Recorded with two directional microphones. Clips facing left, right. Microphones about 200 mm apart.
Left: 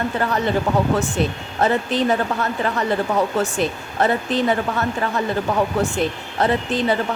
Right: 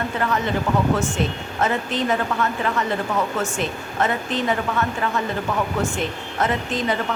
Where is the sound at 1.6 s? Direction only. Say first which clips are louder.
Left 4 dB; 35° left (ahead or behind).